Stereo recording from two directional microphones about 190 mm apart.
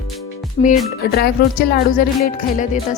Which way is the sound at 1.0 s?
55° left (ahead or behind).